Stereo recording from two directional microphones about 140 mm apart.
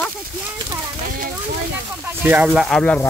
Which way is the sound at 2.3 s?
10° right (ahead or behind).